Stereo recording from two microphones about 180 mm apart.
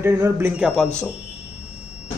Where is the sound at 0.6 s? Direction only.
Centre (ahead or behind).